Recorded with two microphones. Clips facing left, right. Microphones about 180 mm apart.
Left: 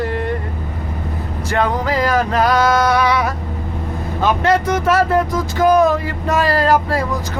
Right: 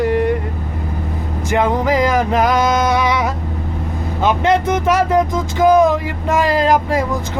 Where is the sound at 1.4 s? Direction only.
20° right (ahead or behind).